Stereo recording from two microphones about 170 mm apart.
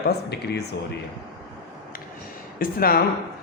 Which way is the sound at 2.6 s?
60° left (ahead or behind).